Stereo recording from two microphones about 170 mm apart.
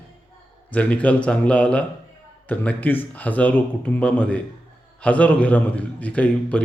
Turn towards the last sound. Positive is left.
turn(degrees=5)  # may be behind; listen again after turning